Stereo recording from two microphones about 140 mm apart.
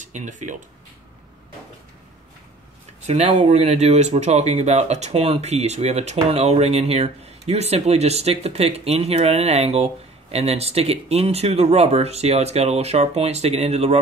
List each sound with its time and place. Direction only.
0.0 s speech: 60° right (ahead or behind)
3.1 s speech: 50° right (ahead or behind)